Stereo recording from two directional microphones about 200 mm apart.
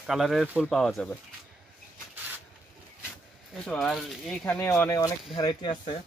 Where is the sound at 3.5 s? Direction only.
Centre (ahead or behind).